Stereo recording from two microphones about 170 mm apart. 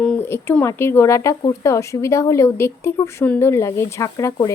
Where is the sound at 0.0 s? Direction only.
10° left (ahead or behind).